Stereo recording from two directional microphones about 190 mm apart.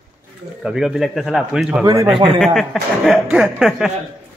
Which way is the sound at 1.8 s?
15° right (ahead or behind).